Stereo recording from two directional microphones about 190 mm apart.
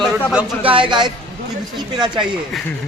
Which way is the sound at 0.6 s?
25° right (ahead or behind).